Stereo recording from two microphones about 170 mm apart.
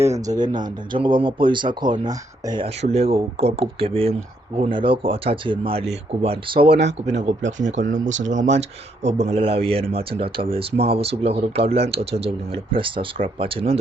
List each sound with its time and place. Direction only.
0.3 s speech: 25° right (ahead or behind)
2.6 s speech: 35° right (ahead or behind)
7.6 s speech: 50° right (ahead or behind); by 13.7 s 30° right (ahead or behind)